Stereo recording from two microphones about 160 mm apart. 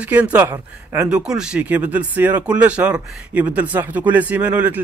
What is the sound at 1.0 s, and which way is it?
A man's voice, 5° right (ahead or behind).